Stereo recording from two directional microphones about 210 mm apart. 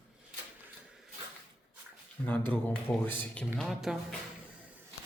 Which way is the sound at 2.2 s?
10° left (ahead or behind).